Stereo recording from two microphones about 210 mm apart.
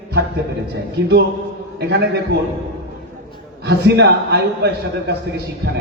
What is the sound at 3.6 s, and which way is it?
A man's voice, 50° right (ahead or behind).